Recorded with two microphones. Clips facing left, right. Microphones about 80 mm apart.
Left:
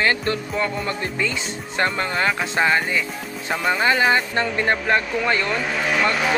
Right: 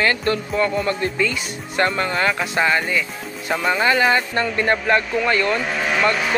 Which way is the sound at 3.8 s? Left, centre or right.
Left.